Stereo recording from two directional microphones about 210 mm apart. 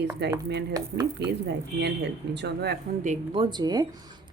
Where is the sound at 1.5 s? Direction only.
55° right (ahead or behind).